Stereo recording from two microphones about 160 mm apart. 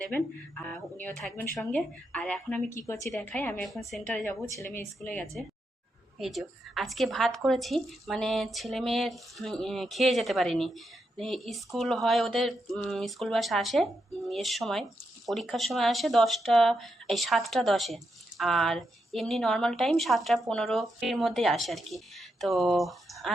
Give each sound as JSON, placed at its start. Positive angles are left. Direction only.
{"t": 0.0, "sound": "speech", "side_deg": 5}
{"t": 3.1, "sound": "speech", "side_deg": 5}
{"t": 3.6, "sound": "speech", "side_deg": 0}